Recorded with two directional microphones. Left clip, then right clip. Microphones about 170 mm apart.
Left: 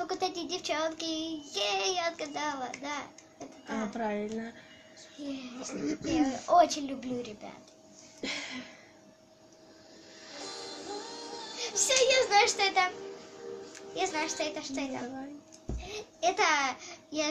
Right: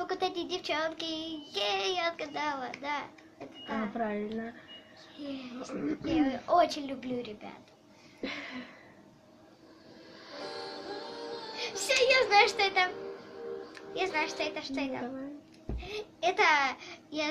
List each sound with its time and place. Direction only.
0.0 s child singing: centre (ahead or behind)
8.2 s a sound: 5° left (ahead or behind)
10.2 s music: 45° right (ahead or behind)
11.5 s child singing: 5° left (ahead or behind)
13.9 s child singing: centre (ahead or behind)
15.8 s a child's voice: centre (ahead or behind)